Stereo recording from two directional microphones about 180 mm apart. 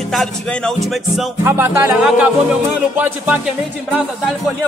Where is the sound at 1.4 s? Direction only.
15° right (ahead or behind).